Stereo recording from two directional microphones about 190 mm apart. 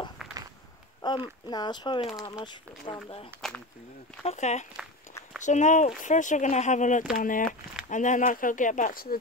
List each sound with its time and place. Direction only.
0.2 s walk: centre (ahead or behind)
1.0 s speech: 25° left (ahead or behind)
3.3 s speech: 5° left (ahead or behind)
4.2 s speech: 35° left (ahead or behind)